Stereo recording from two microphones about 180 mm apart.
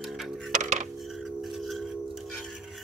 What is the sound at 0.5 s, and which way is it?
Music, 45° right (ahead or behind).